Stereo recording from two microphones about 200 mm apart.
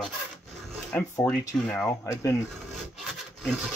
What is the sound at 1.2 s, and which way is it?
Speech, 5° left (ahead or behind).